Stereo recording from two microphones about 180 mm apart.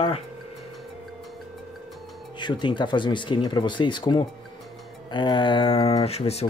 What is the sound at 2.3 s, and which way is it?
Speech, 25° left (ahead or behind).